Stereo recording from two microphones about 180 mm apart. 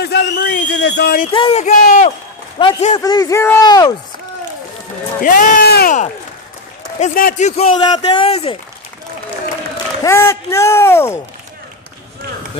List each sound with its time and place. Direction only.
0.0 s a sound: 65° left (ahead or behind)
1.3 s speech: 30° left (ahead or behind)
1.6 s speech: 50° left (ahead or behind)
2.6 s a man's voice: 35° left (ahead or behind)
3.0 s speech: 20° left (ahead or behind)
5.2 s speech: 50° left (ahead or behind)
7.0 s a man's voice: 45° left (ahead or behind)
10.0 s speech: 15° left (ahead or behind)